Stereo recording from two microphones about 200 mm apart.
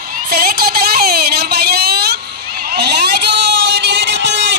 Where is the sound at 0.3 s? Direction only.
50° right (ahead or behind).